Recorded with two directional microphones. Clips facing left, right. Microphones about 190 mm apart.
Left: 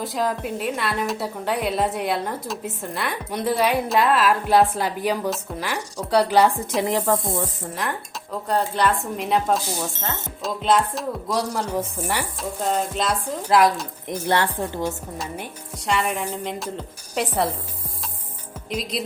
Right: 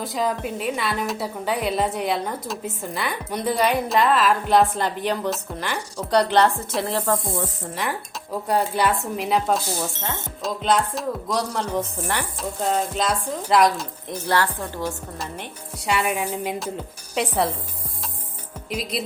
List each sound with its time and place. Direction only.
0.0 s a woman's voice: centre (ahead or behind); by 7.2 s 15° left (ahead or behind)
7.8 s a woman's voice: 5° right (ahead or behind)
14.3 s a woman's voice: 20° left (ahead or behind)
15.9 s speech: 5° right (ahead or behind)
18.7 s a woman's voice: 5° right (ahead or behind)